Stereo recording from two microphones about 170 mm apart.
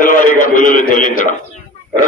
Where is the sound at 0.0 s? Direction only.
50° left (ahead or behind).